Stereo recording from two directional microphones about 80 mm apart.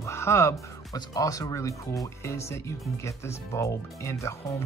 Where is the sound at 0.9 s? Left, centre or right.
Left.